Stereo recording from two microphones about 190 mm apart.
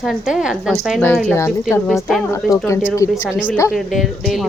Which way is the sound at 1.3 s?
15° left (ahead or behind).